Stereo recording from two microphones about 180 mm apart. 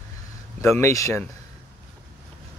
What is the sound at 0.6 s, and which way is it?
Speech, 15° left (ahead or behind).